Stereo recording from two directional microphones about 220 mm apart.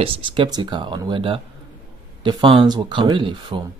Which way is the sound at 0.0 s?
25° right (ahead or behind).